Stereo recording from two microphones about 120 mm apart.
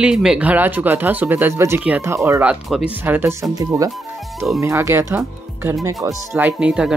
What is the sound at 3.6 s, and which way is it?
Speech, 30° right (ahead or behind).